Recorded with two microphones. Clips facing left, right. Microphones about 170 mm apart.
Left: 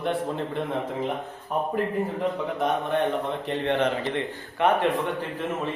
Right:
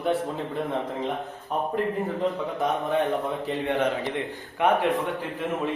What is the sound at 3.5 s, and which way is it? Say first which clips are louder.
A man's voice: left 1 dB; 10° right (ahead or behind).